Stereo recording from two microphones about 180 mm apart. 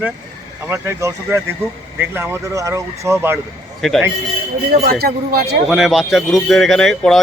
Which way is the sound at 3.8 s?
Centre (ahead or behind).